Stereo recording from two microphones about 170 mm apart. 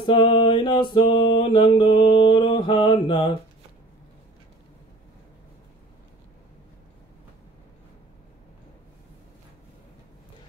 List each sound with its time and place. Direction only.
0.0 s mantra: 30° left (ahead or behind)